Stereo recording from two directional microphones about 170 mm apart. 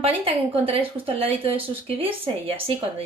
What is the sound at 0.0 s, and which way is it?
Speech, 35° right (ahead or behind).